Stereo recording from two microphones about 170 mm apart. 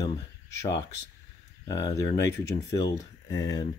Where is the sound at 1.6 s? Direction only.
20° left (ahead or behind).